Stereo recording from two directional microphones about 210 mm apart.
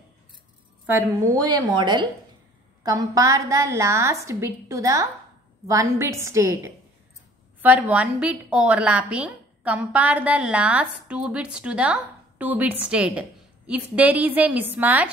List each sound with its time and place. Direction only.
0.8 s a woman's voice: 15° right (ahead or behind)